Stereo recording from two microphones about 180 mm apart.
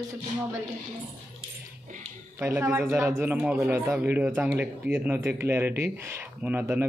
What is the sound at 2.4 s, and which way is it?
Speech, 10° right (ahead or behind).